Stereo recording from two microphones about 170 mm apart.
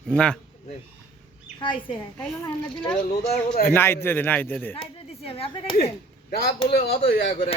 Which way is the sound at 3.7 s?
15° left (ahead or behind).